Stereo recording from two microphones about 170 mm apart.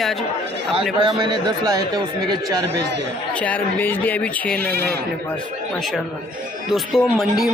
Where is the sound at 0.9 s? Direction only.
25° right (ahead or behind).